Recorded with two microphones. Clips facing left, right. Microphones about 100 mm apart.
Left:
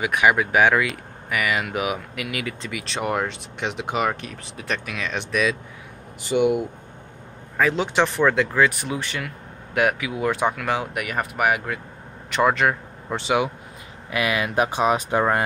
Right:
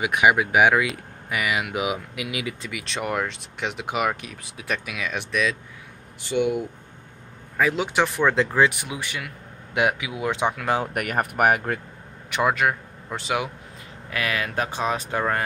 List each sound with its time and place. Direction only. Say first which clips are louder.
0.0 s speech: even; 15° right (ahead or behind)
2.7 s speech: left 3 dB; centre (ahead or behind)
7.5 s speech: left 1 dB; 5° right (ahead or behind)
8.4 s speech: even; 20° right (ahead or behind)
10.9 s speech: right 2 dB; 50° right (ahead or behind)
12.3 s speech: left 2 dB; 10° right (ahead or behind)
14.1 s speech: left 4 dB; 10° left (ahead or behind)